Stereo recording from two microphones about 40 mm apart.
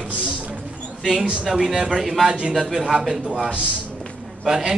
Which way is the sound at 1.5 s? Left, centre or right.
Centre.